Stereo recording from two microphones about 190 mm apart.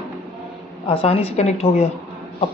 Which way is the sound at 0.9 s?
30° left (ahead or behind).